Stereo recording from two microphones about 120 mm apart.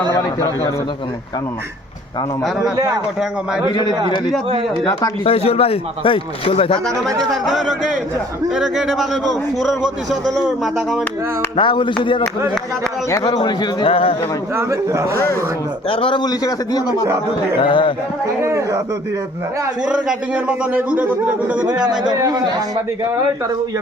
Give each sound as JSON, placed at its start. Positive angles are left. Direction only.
{"t": 0.1, "sound": "a man's voice", "side_deg": 25}
{"t": 4.9, "sound": "speech", "side_deg": 35}
{"t": 5.2, "sound": "speech", "side_deg": 55}
{"t": 7.3, "sound": "speech", "side_deg": -5}
{"t": 11.5, "sound": "speech", "side_deg": 40}
{"t": 13.2, "sound": "speech", "side_deg": 35}
{"t": 14.5, "sound": "a man's voice", "side_deg": -25}
{"t": 15.9, "sound": "speech", "side_deg": 45}
{"t": 17.6, "sound": "speech", "side_deg": 45}
{"t": 18.4, "sound": "a man's voice", "side_deg": -25}
{"t": 19.8, "sound": "a man's voice", "side_deg": -5}
{"t": 22.0, "sound": "a man's voice", "side_deg": -35}